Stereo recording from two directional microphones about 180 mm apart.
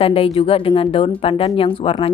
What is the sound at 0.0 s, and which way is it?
Speech, 30° left (ahead or behind).